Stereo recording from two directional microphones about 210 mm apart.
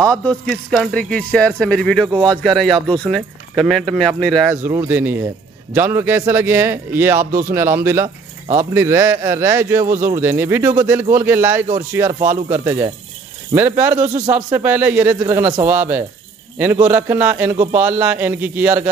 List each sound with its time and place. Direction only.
0.0 s speech: 5° left (ahead or behind)
4.6 s speech: 10° right (ahead or behind)